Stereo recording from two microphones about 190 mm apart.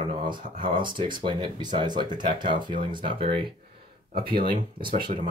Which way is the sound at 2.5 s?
45° right (ahead or behind).